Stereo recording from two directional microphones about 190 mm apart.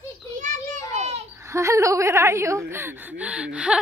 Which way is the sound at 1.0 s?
35° right (ahead or behind).